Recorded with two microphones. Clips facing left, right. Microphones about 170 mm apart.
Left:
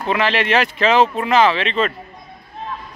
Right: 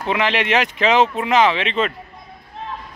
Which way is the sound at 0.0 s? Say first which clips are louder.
Left 1 dB; 15° right (ahead or behind).